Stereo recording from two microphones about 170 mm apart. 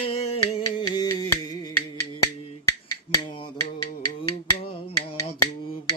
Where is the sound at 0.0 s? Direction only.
35° left (ahead or behind).